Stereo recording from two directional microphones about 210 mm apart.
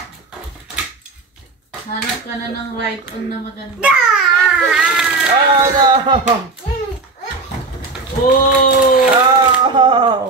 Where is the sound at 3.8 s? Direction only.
5° right (ahead or behind).